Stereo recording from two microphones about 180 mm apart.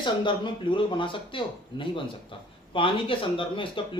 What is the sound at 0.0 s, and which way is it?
Speech, 25° left (ahead or behind).